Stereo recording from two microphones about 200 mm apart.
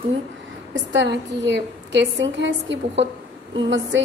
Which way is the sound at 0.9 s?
60° right (ahead or behind).